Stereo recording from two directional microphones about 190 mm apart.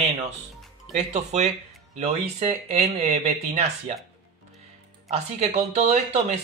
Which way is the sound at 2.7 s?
35° right (ahead or behind).